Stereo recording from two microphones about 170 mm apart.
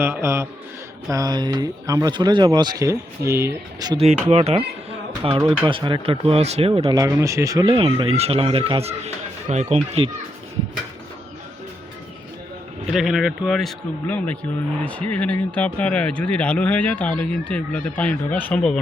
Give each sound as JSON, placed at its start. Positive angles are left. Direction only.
{"t": 0.0, "sound": "a man's voice", "side_deg": -15}
{"t": 3.9, "sound": "speech", "side_deg": -35}
{"t": 7.0, "sound": "speech", "side_deg": -15}
{"t": 7.6, "sound": "speech", "side_deg": -30}
{"t": 12.9, "sound": "a man's voice", "side_deg": 0}